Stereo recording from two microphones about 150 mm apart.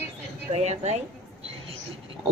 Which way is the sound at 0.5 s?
50° right (ahead or behind).